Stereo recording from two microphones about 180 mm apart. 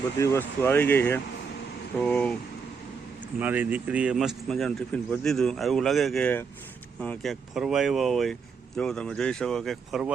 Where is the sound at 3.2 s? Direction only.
10° right (ahead or behind).